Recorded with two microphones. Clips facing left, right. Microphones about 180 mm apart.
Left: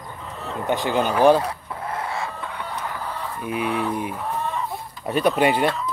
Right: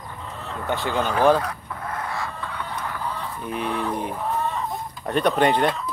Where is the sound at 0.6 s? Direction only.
15° left (ahead or behind).